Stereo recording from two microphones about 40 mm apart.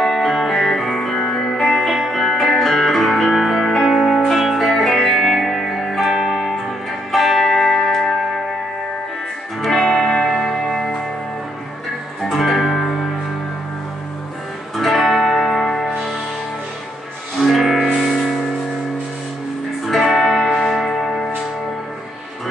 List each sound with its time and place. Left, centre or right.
0.0 s music: centre
0.7 s music: centre
1.6 s music: centre
4.6 s music: centre
6.3 s music: centre
7.1 s music: centre
9.6 s music: centre
10.0 s music: centre
12.4 s music: centre
14.8 s music: centre
17.4 s music: centre
19.9 s music: centre